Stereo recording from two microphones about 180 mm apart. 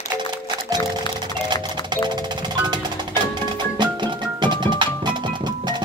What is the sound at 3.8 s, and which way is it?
Music, 25° right (ahead or behind).